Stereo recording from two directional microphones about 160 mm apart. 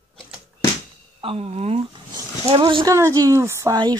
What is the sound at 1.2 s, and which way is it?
Speech, 40° right (ahead or behind).